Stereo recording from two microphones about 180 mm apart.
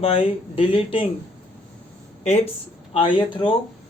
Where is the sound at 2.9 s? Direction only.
25° left (ahead or behind).